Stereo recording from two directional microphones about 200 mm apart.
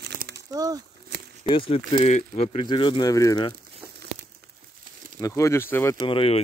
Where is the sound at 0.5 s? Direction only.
20° right (ahead or behind).